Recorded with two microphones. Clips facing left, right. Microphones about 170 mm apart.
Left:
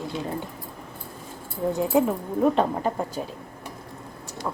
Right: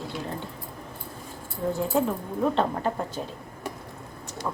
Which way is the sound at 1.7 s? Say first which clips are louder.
Left 4 dB; 15° left (ahead or behind).